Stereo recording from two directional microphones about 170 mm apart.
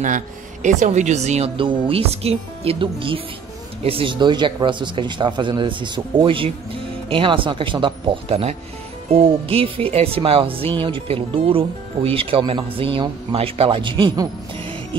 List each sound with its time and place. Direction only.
0.0 s speech: 45° right (ahead or behind); by 15.0 s 30° right (ahead or behind)